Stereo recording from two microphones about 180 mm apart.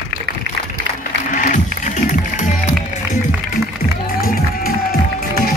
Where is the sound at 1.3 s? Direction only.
50° left (ahead or behind).